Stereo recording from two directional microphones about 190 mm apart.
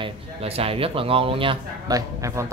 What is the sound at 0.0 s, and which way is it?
A man's voice, 30° right (ahead or behind).